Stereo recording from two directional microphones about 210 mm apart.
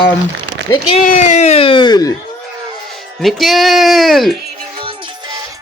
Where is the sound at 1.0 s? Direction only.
35° left (ahead or behind); by 2.1 s 20° left (ahead or behind).